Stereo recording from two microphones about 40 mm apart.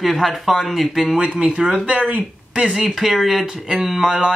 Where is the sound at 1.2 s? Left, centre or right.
Right.